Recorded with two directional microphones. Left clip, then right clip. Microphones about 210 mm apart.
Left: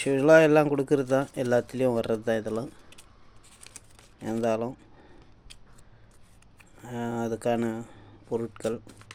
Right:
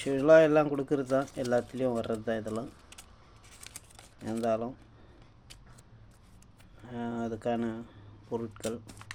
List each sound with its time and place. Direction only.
0.0 s speech: 50° left (ahead or behind)
3.6 s scissors: 5° right (ahead or behind)
4.2 s speech: 50° left (ahead or behind)
6.8 s speech: 50° left (ahead or behind)